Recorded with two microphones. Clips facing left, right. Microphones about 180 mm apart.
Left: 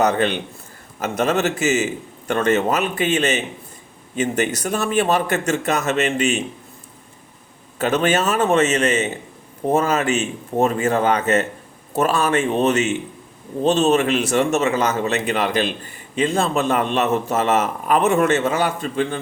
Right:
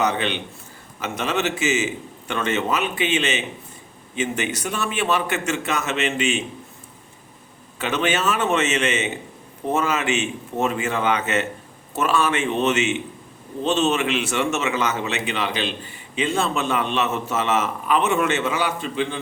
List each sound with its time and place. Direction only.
0.0 s a man's voice: 45° left (ahead or behind)
7.8 s a man's voice: 40° left (ahead or behind)